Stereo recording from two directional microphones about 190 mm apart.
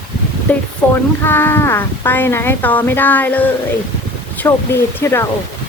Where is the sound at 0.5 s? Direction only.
10° left (ahead or behind).